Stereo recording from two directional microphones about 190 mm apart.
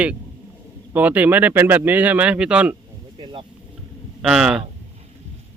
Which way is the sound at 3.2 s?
30° right (ahead or behind).